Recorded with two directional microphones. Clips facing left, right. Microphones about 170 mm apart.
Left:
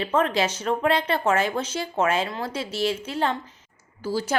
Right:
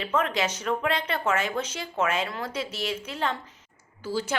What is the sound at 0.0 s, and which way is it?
A woman's voice, 30° left (ahead or behind).